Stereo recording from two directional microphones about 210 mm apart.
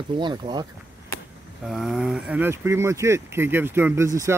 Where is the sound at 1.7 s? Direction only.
Centre (ahead or behind).